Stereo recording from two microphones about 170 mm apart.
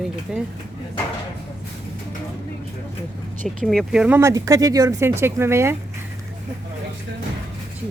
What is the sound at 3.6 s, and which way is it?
Speech, centre (ahead or behind).